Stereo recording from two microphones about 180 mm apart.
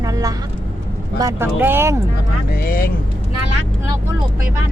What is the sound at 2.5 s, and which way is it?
Speech, 55° left (ahead or behind).